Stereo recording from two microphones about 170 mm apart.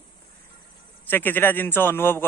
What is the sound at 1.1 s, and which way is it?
A man's voice, 10° left (ahead or behind).